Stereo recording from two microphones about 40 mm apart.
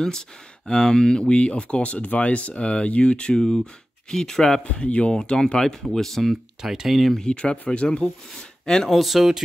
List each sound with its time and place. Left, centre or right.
0.7 s speech: centre
4.7 s speech: left; by 6.3 s centre
6.6 s speech: centre
7.2 s speech: left
8.0 s speech: centre
8.8 s speech: centre